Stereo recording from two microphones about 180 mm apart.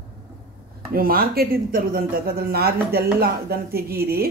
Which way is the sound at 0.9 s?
55° right (ahead or behind).